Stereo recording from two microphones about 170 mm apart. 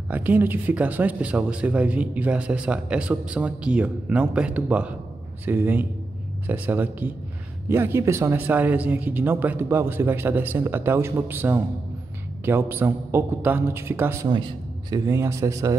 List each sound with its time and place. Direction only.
0.1 s speech: 10° right (ahead or behind)
14.3 s a man's voice: 30° right (ahead or behind)
15.0 s speech: 15° right (ahead or behind)